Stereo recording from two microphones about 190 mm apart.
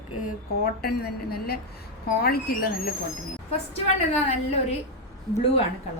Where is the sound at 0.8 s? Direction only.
55° left (ahead or behind).